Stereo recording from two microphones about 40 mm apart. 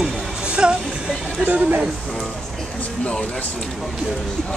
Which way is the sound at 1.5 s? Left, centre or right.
Right.